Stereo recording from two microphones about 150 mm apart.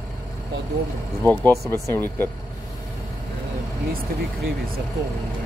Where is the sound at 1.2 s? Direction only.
10° left (ahead or behind).